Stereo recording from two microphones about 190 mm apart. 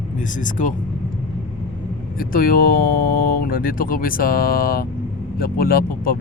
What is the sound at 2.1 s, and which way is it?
Speech, 50° left (ahead or behind).